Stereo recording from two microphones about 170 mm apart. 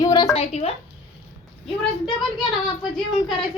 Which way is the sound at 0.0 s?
20° left (ahead or behind).